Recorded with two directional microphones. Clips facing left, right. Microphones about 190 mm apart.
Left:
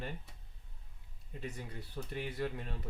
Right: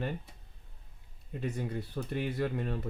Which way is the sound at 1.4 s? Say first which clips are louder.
Right 9 dB; 60° right (ahead or behind).